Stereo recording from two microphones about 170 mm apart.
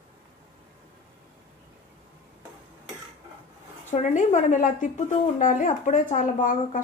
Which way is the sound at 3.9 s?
45° left (ahead or behind).